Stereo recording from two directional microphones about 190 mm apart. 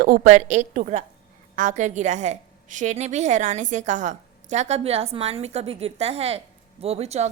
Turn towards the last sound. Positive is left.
turn(degrees=-35)  # may be behind; listen again after turning